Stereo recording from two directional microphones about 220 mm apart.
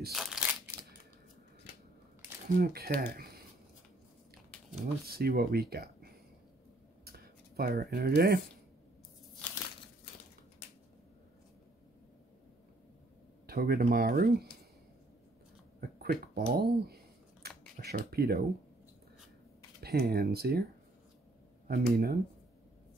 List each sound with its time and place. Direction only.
0.1 s crushing: centre (ahead or behind)
2.4 s speech: 45° right (ahead or behind)
4.5 s a sound: centre (ahead or behind)
5.0 s speech: 45° right (ahead or behind)
7.1 s a sound: 45° right (ahead or behind)
13.5 s speech: 45° right (ahead or behind)
15.8 s a sound: 45° right (ahead or behind)
19.8 s speech: 45° right (ahead or behind)
21.6 s speech: 45° right (ahead or behind)